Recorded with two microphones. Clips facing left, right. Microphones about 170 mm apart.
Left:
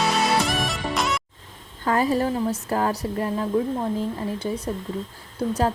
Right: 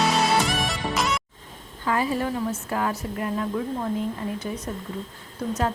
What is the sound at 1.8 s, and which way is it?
A woman's voice, 40° left (ahead or behind).